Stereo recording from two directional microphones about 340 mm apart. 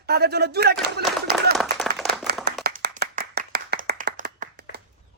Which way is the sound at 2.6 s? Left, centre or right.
Right.